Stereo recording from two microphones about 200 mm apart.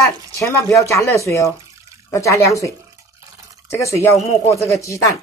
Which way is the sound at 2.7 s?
15° right (ahead or behind).